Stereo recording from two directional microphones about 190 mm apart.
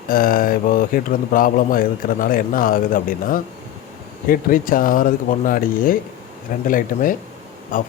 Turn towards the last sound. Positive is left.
turn(degrees=45)  # may be behind; listen again after turning